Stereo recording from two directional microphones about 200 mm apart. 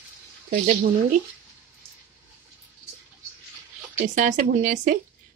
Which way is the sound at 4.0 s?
40° right (ahead or behind).